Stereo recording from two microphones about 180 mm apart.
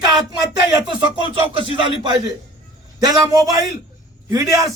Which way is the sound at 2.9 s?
20° right (ahead or behind).